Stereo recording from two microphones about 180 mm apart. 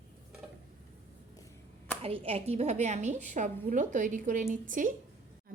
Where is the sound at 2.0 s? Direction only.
35° right (ahead or behind).